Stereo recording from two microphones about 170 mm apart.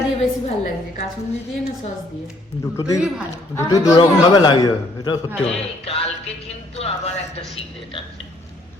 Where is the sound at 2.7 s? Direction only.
20° left (ahead or behind).